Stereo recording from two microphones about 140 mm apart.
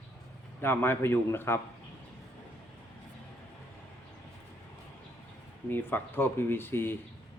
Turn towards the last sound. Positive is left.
turn(degrees=15)  # may be behind; listen again after turning